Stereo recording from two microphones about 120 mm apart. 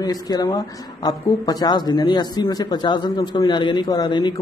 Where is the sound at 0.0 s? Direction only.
30° left (ahead or behind).